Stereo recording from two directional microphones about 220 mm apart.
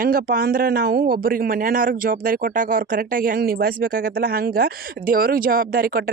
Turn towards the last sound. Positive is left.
turn(degrees=-40)  # may be behind; listen again after turning